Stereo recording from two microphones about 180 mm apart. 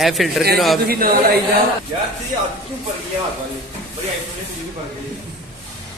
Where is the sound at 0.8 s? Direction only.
60° right (ahead or behind).